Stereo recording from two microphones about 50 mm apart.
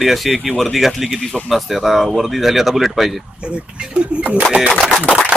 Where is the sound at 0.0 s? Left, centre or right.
Centre.